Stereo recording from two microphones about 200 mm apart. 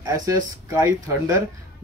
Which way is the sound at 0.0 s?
15° right (ahead or behind).